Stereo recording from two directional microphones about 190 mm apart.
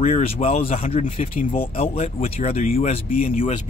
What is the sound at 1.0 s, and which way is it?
Speech, 45° left (ahead or behind).